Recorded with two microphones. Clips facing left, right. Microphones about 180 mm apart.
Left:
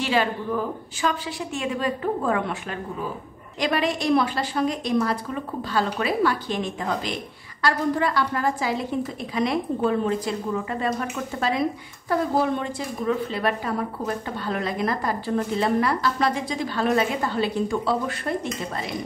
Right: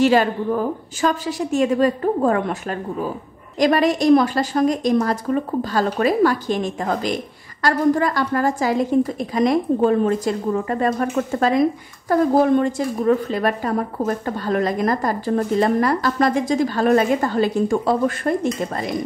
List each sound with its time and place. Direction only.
0.0 s a woman's voice: 45° right (ahead or behind)